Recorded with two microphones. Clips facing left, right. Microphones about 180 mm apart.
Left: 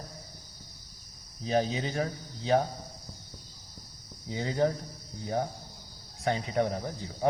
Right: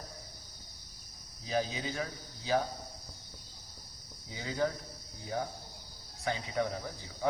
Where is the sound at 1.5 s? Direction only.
35° left (ahead or behind).